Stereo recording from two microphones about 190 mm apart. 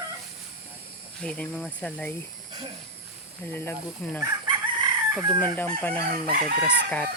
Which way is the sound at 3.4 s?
10° left (ahead or behind).